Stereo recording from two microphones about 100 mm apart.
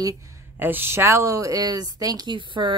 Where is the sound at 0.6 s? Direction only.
20° right (ahead or behind).